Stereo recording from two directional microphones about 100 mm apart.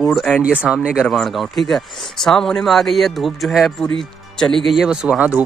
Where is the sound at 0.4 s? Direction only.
15° right (ahead or behind).